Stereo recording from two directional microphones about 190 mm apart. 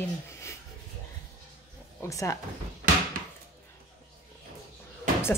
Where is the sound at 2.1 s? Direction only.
15° left (ahead or behind).